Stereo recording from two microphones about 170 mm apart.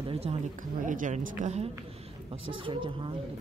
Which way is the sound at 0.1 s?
35° right (ahead or behind).